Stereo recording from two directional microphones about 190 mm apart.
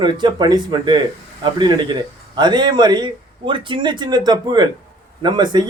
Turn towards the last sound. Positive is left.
turn(degrees=-25)  # may be behind; listen again after turning